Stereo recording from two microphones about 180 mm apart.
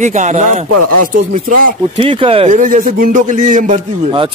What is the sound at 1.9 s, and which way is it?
Speech, 30° right (ahead or behind).